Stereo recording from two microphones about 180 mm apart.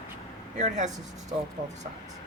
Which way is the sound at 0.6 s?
40° right (ahead or behind).